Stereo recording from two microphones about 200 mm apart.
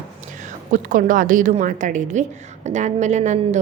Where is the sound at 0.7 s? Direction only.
40° right (ahead or behind).